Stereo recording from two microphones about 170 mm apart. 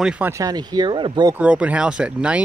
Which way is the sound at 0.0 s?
10° right (ahead or behind).